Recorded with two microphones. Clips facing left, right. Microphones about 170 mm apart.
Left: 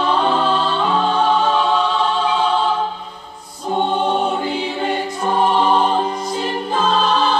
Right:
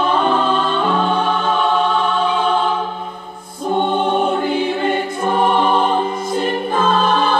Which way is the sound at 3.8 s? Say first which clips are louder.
Right 1 dB; 50° right (ahead or behind).